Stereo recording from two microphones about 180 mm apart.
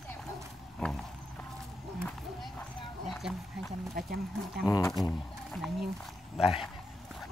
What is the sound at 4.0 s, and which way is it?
Speech, 60° right (ahead or behind).